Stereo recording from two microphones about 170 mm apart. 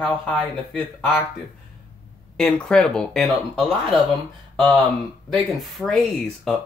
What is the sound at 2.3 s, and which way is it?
Speech, 5° left (ahead or behind).